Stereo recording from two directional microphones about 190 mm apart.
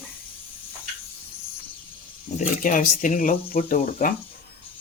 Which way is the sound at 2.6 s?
45° left (ahead or behind).